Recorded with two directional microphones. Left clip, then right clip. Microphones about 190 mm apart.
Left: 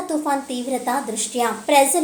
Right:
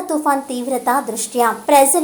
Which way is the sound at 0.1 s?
15° right (ahead or behind).